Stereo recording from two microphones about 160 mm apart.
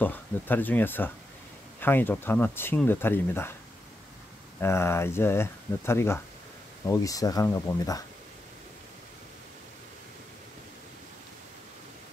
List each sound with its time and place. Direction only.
0.0 s speech: 10° left (ahead or behind)
4.6 s speech: 15° left (ahead or behind)